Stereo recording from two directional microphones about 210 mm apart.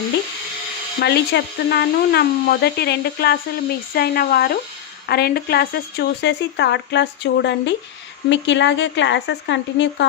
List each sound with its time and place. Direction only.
1.0 s speech: 50° left (ahead or behind)